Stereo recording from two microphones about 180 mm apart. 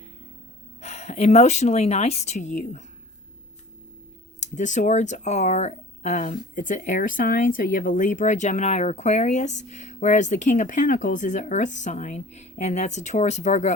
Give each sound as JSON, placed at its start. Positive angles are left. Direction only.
{"t": 0.8, "sound": "speech", "side_deg": 40}
{"t": 4.4, "sound": "speech", "side_deg": 45}